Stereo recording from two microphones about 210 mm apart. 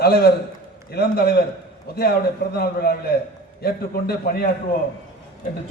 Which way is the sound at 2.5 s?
50° left (ahead or behind).